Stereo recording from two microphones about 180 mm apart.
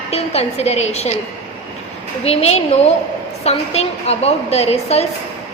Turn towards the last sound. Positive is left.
turn(degrees=35)  # may be behind; listen again after turning